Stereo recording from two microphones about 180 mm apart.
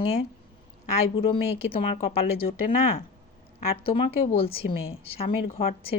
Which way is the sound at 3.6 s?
30° left (ahead or behind).